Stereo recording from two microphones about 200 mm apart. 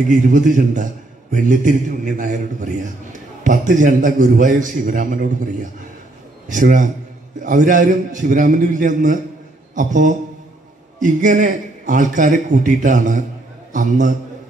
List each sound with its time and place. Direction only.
0.1 s a man's voice: 40° right (ahead or behind)